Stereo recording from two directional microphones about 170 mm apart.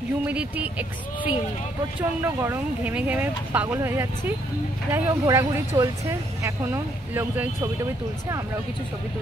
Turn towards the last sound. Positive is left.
turn(degrees=-10)  # may be behind; listen again after turning